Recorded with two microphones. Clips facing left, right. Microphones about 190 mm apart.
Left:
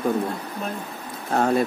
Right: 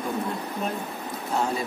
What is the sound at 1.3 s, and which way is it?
Speech, 60° left (ahead or behind).